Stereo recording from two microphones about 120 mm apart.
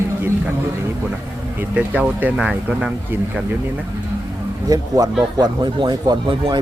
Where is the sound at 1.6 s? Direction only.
10° right (ahead or behind).